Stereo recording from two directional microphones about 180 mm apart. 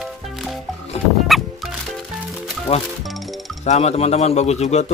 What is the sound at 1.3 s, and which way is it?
Fowl, centre (ahead or behind).